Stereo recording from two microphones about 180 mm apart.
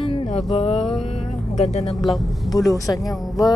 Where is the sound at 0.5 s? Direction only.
35° left (ahead or behind).